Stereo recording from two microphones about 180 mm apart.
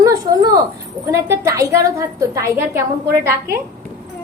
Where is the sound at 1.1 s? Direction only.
15° right (ahead or behind).